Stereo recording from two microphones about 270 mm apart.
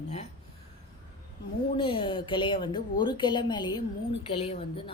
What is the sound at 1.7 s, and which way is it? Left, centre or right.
A woman's voice, centre.